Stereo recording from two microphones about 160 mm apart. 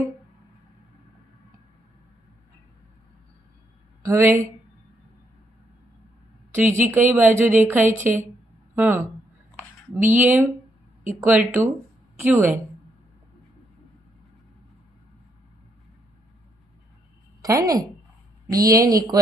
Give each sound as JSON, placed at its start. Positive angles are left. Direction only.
{"t": 4.0, "sound": "speech", "side_deg": -15}
{"t": 6.5, "sound": "a woman's voice", "side_deg": -15}
{"t": 17.4, "sound": "a woman's voice", "side_deg": -20}